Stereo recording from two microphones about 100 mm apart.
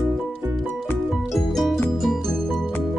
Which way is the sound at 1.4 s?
5° left (ahead or behind).